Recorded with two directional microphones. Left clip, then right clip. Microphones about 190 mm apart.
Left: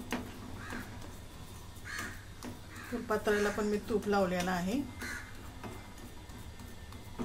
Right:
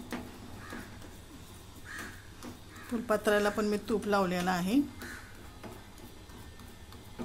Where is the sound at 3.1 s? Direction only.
60° right (ahead or behind).